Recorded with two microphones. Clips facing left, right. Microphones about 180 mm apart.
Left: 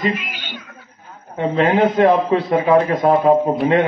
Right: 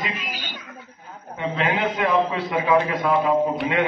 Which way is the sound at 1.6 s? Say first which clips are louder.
Left 10 dB; 45° left (ahead or behind).